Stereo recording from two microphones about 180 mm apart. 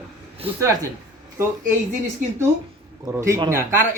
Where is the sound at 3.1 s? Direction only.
15° right (ahead or behind).